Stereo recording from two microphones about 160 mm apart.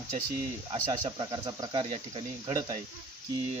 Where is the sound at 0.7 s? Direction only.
25° right (ahead or behind).